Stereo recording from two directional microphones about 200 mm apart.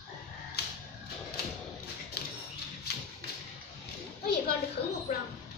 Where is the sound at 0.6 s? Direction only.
55° left (ahead or behind).